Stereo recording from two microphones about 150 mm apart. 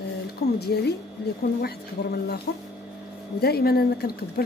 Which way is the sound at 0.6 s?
90° left.